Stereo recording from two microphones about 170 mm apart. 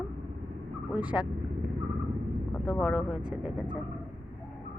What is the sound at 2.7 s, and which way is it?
Speech, 5° right (ahead or behind).